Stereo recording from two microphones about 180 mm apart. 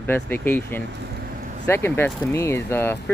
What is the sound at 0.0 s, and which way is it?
Speech, 10° left (ahead or behind).